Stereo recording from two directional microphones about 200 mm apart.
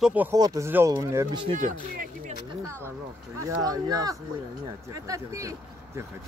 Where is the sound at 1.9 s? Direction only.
45° right (ahead or behind).